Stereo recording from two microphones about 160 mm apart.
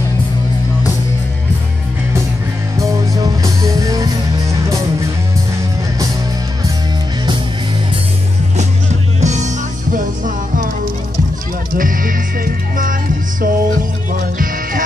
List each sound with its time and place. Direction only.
2.8 s music: 20° right (ahead or behind)
9.2 s music: 45° right (ahead or behind)
9.9 s music: 55° right (ahead or behind)
11.7 s music: 60° right (ahead or behind)